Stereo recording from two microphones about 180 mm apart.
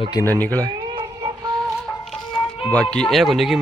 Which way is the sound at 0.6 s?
20° right (ahead or behind).